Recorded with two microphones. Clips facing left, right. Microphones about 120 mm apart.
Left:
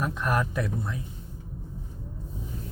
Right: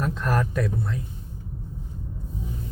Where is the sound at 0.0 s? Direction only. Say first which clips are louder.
Right 2 dB; 15° left (ahead or behind).